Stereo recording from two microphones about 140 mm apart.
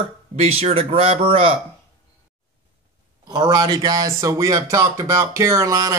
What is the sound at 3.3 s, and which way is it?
Speech, 25° right (ahead or behind).